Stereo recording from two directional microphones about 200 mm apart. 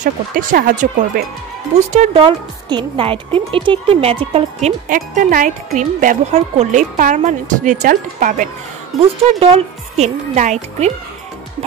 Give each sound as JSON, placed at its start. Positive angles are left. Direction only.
{"t": 0.0, "sound": "speech", "side_deg": -40}
{"t": 1.7, "sound": "a woman's voice", "side_deg": -30}